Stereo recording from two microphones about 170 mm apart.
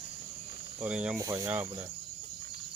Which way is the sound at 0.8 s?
5° right (ahead or behind).